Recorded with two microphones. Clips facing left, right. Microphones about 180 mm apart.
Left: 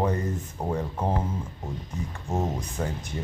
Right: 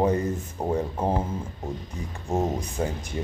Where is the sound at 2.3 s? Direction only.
10° right (ahead or behind).